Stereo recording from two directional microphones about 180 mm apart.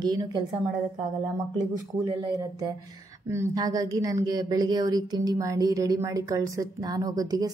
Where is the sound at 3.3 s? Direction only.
15° right (ahead or behind).